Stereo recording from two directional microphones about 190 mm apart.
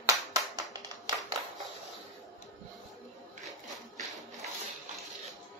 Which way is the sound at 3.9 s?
40° right (ahead or behind).